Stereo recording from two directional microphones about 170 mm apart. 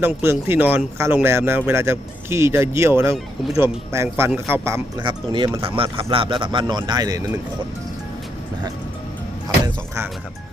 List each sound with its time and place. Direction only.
0.0 s speech: 15° right (ahead or behind)
4.9 s speech: 25° right (ahead or behind)
9.6 s a sound: 15° right (ahead or behind)